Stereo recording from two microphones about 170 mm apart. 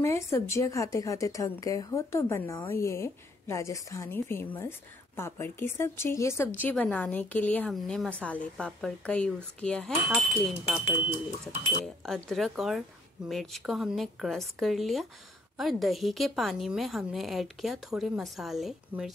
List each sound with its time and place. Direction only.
0.0 s a woman's voice: 15° left (ahead or behind)
11.8 s a woman's voice: centre (ahead or behind)